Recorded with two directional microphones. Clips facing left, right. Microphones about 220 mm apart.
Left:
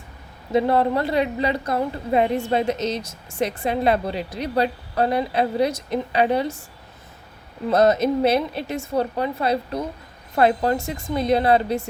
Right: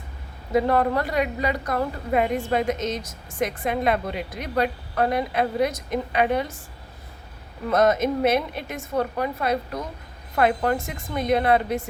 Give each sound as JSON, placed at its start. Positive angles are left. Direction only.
{"t": 0.5, "sound": "a woman's voice", "side_deg": 25}
{"t": 7.7, "sound": "a woman's voice", "side_deg": 35}